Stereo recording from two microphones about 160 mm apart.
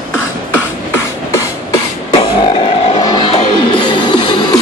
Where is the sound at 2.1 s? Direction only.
35° left (ahead or behind).